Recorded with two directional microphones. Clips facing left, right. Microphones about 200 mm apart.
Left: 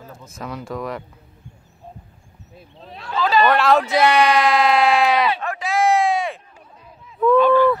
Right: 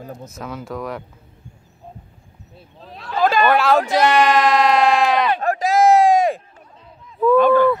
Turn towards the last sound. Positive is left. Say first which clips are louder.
# right 1 dB
turn(degrees=-50)  # may be behind; listen again after turning